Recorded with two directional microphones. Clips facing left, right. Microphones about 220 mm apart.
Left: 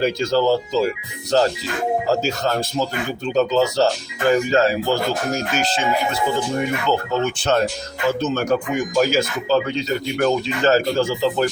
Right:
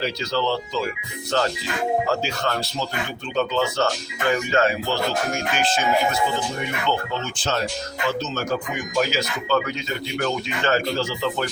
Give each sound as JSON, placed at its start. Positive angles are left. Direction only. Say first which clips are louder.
{"t": 0.0, "sound": "speech", "louder": "left 6 dB", "side_deg": 45}
{"t": 7.3, "sound": "speech", "louder": "left 6 dB", "side_deg": 60}
{"t": 9.0, "sound": "speech", "louder": "left 4 dB", "side_deg": 45}
{"t": 9.6, "sound": "speech", "louder": "left 5 dB", "side_deg": 30}